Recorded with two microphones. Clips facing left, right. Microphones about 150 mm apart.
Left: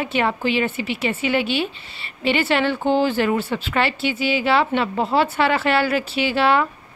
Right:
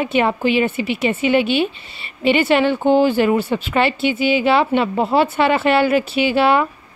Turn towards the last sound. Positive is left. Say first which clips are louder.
# right 3 dB
turn(degrees=-15)  # may be behind; listen again after turning